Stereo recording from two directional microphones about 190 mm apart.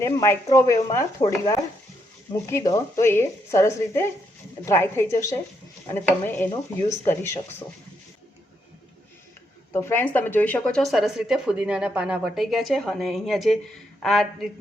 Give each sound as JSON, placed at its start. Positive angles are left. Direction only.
{"t": 0.0, "sound": "a woman's voice", "side_deg": 15}
{"t": 2.3, "sound": "a woman's voice", "side_deg": 15}
{"t": 9.7, "sound": "speech", "side_deg": 10}